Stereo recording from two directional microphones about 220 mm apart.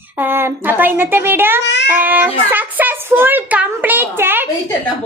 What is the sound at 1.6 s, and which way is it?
Child singing, 55° left (ahead or behind).